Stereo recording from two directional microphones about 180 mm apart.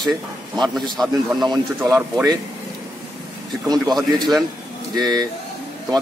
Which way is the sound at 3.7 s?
Centre (ahead or behind).